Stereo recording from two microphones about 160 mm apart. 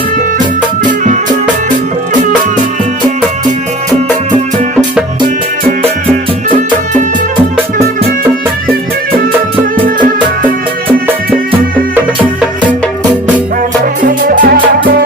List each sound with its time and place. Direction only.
0.9 s music: 55° right (ahead or behind)
9.7 s music: 60° right (ahead or behind)
14.0 s music: 60° right (ahead or behind)